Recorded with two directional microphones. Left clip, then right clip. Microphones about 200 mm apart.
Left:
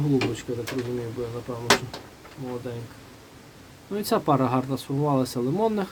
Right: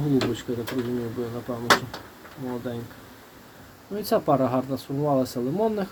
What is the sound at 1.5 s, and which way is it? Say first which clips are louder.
Speech: right 2 dB; 15° right (ahead or behind).